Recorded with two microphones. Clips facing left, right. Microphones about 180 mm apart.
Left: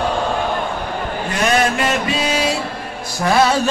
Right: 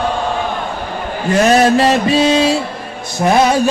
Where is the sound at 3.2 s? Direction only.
20° right (ahead or behind).